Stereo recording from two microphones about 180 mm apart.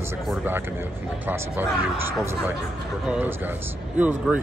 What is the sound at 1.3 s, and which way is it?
Speech, 10° right (ahead or behind).